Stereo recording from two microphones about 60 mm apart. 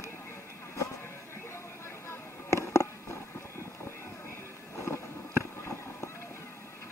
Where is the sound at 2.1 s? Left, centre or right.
Left.